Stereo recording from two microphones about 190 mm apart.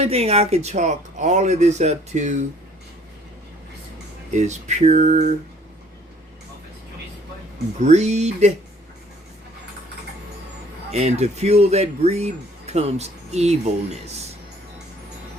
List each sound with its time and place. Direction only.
0.0 s speech: 35° right (ahead or behind)
4.3 s speech: 35° right (ahead or behind)
7.8 s speech: 35° right (ahead or behind)
10.9 s speech: 35° right (ahead or behind)